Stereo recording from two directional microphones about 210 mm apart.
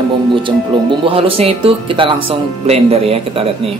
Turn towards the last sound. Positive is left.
turn(degrees=-25)  # may be behind; listen again after turning